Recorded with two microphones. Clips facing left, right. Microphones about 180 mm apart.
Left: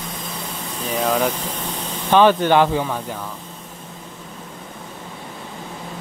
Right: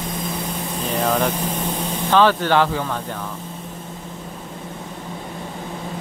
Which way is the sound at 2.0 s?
15° left (ahead or behind).